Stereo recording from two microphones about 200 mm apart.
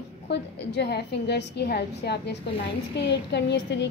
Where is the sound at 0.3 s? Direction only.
55° left (ahead or behind).